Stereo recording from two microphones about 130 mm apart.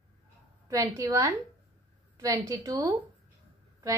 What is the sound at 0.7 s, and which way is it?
A woman's voice, 25° right (ahead or behind).